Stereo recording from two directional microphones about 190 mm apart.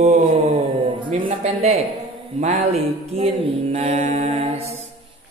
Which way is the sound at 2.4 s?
35° right (ahead or behind).